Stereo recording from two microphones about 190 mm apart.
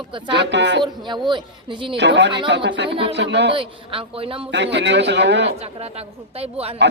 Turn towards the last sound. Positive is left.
turn(degrees=-30)  # may be behind; listen again after turning